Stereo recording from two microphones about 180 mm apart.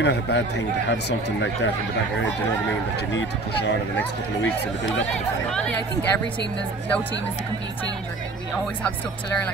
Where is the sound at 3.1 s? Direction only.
80° left.